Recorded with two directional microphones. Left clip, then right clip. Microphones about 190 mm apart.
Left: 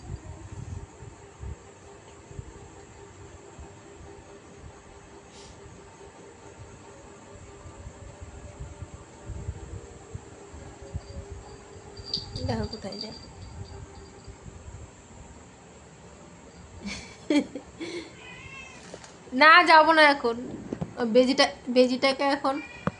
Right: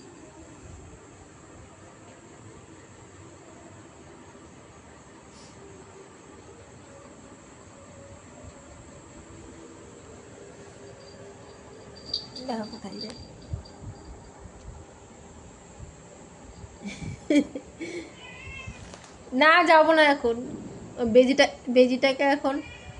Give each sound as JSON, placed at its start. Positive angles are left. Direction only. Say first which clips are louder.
{"t": 12.5, "sound": "a woman's voice", "louder": "even", "side_deg": 15}
{"t": 16.8, "sound": "a sound", "louder": "right 2 dB", "side_deg": 15}
{"t": 19.3, "sound": "a woman's voice", "louder": "left 2 dB", "side_deg": 15}